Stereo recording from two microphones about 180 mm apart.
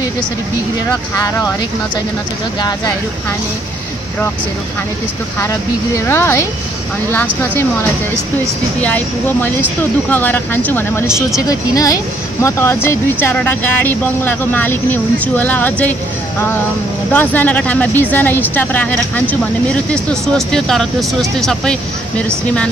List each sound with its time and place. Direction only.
1.1 s speech: 20° left (ahead or behind)
6.0 s speech: 15° left (ahead or behind)
8.8 s speech: 10° left (ahead or behind)
11.1 s speech: centre (ahead or behind)
11.4 s speech: 20° left (ahead or behind); by 22.2 s 5° left (ahead or behind)